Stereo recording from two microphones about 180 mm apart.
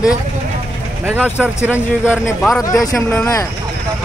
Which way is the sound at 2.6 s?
20° left (ahead or behind).